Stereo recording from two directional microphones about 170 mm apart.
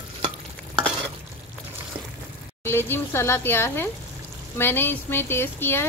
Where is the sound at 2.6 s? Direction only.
15° left (ahead or behind).